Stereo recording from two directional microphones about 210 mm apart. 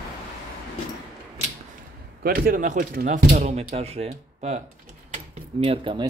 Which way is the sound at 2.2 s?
45° right (ahead or behind).